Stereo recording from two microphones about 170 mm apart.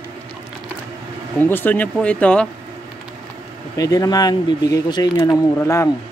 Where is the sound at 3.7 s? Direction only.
20° left (ahead or behind).